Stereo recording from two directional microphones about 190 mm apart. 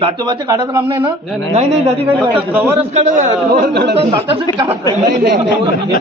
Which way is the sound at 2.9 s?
40° right (ahead or behind).